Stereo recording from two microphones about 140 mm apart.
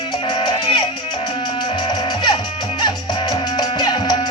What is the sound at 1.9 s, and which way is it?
Music, 30° left (ahead or behind).